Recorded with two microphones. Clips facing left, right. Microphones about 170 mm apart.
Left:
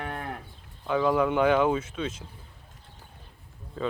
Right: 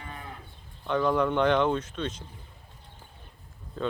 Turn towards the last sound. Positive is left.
turn(degrees=0)  # may be behind; listen again after turning